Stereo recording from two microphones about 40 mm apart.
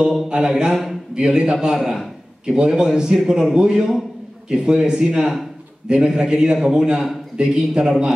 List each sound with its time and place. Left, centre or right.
0.3 s a man's voice: centre
7.3 s a man's voice: right